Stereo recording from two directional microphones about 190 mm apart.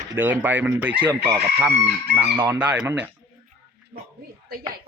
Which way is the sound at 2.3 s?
10° right (ahead or behind).